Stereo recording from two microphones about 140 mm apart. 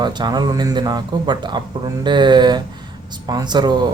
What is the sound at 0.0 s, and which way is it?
Speech, 30° right (ahead or behind).